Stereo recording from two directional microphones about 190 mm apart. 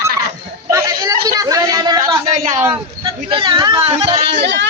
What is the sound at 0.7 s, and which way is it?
A man's voice, 20° right (ahead or behind).